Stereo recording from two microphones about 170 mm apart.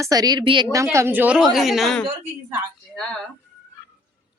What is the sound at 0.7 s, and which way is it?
A woman's voice, 15° right (ahead or behind).